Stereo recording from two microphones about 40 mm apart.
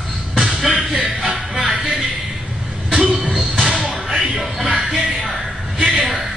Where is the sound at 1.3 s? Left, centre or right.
Centre.